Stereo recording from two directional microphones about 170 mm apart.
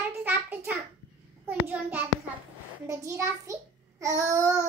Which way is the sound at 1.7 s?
10° right (ahead or behind).